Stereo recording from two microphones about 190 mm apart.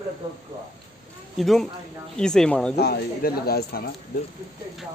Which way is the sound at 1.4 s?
Centre (ahead or behind).